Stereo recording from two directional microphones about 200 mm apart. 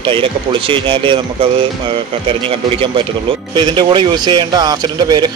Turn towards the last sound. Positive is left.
turn(degrees=-20)  # may be behind; listen again after turning